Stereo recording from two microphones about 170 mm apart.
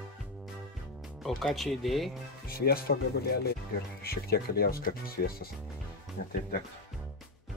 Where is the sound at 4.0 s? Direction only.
65° left (ahead or behind).